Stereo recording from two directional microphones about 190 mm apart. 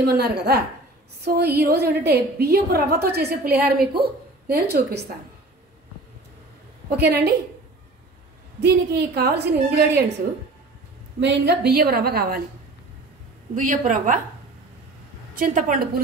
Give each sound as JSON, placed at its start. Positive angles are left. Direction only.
{"t": 0.0, "sound": "a woman's voice", "side_deg": -60}
{"t": 7.0, "sound": "a woman's voice", "side_deg": -60}
{"t": 8.5, "sound": "a woman's voice", "side_deg": -60}
{"t": 11.1, "sound": "a woman's voice", "side_deg": -65}
{"t": 13.6, "sound": "a woman's voice", "side_deg": -45}
{"t": 15.3, "sound": "a woman's voice", "side_deg": -45}